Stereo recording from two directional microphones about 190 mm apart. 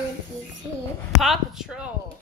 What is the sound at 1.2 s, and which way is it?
Speech, centre (ahead or behind).